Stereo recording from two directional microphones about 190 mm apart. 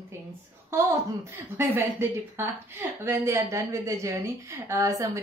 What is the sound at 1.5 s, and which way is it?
A woman's voice, 10° right (ahead or behind).